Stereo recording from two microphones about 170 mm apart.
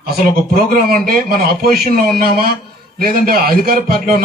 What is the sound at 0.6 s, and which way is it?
A man's voice, 60° right (ahead or behind).